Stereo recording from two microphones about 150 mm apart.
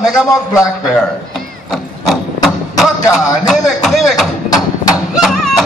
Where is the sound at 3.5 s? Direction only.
Centre (ahead or behind).